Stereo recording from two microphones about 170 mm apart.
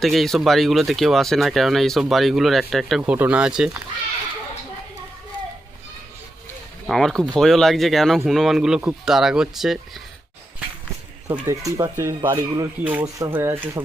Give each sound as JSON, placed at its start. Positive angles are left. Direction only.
{"t": 0.0, "sound": "speech", "side_deg": 0}
{"t": 6.8, "sound": "speech", "side_deg": 0}
{"t": 11.4, "sound": "speech", "side_deg": -20}
{"t": 12.8, "sound": "speech", "side_deg": -10}